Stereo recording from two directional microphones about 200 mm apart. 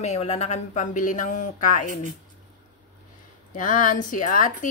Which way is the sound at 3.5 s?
40° left (ahead or behind).